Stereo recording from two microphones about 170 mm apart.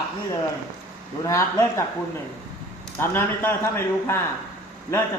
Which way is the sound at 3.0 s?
15° left (ahead or behind).